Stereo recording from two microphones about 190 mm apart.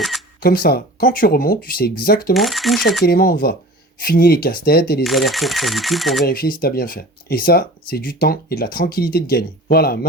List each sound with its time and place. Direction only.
0.6 s speech: 55° left (ahead or behind)
2.3 s speech: centre (ahead or behind)
3.0 s speech: 50° left (ahead or behind)
5.0 s speech: centre (ahead or behind)
6.2 s speech: 50° left (ahead or behind)